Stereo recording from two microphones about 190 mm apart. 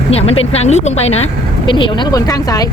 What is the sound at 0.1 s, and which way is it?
Speech, 30° left (ahead or behind).